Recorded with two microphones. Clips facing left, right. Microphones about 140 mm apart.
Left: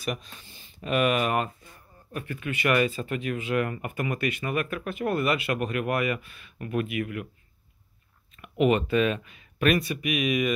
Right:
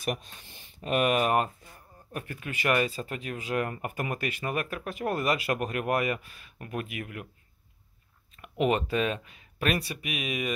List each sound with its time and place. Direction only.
0.0 s speech: 50° right (ahead or behind)
0.8 s speech: 40° right (ahead or behind)
8.4 s speech: 35° right (ahead or behind)